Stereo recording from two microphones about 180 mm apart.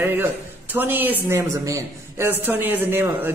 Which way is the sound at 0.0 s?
10° right (ahead or behind).